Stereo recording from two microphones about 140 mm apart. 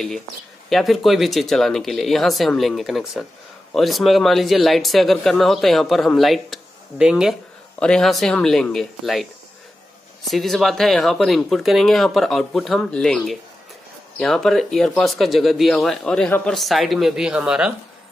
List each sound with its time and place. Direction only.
0.7 s speech: centre (ahead or behind)